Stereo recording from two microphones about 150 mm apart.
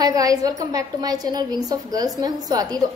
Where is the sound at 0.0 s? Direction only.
25° right (ahead or behind).